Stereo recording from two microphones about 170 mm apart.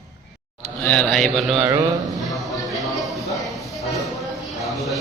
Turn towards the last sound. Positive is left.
turn(degrees=0)  # may be behind; listen again after turning